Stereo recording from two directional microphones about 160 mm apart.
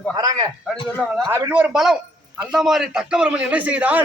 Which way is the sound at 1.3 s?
15° right (ahead or behind).